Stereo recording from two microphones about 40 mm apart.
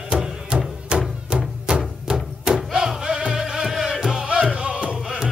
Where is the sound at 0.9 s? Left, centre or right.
Right.